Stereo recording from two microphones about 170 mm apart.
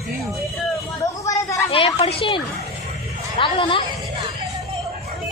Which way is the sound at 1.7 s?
30° left (ahead or behind).